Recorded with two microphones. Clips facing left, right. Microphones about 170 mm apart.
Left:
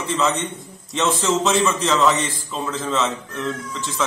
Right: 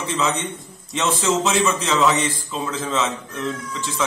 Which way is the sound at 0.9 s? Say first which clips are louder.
Left 1 dB; centre (ahead or behind).